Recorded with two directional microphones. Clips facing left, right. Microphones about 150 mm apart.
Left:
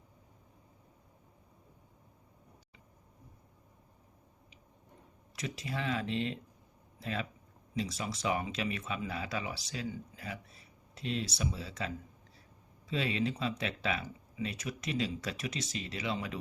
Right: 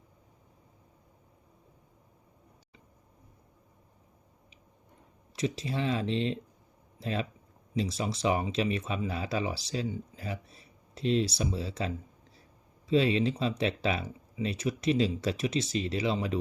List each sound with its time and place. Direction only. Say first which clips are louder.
5.4 s speech: right 7 dB; 30° right (ahead or behind)